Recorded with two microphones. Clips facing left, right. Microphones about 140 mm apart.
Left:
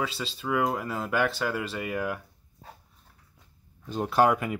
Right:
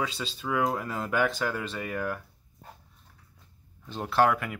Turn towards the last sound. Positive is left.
turn(degrees=15)  # may be behind; listen again after turning